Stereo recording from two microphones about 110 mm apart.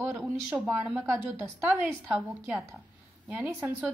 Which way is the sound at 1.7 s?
15° right (ahead or behind).